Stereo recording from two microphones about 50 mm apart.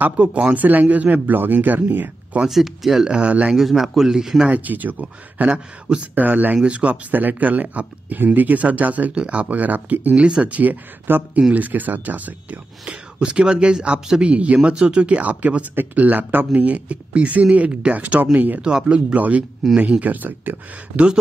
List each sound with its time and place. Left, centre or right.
0.2 s speech: right
2.4 s speech: centre
3.1 s speech: right
3.5 s speech: centre
4.5 s speech: right
5.0 s speech: right
6.2 s speech: right
10.1 s speech: centre
10.4 s speech: right
12.9 s speech: right
15.7 s speech: right
16.0 s speech: right
18.6 s speech: centre
19.1 s speech: right